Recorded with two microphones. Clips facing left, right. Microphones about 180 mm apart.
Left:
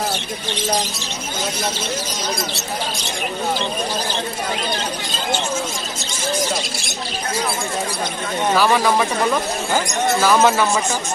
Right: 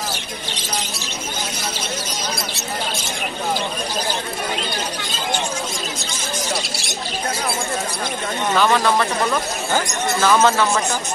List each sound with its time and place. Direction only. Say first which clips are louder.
8.5 s speech: even; 10° left (ahead or behind)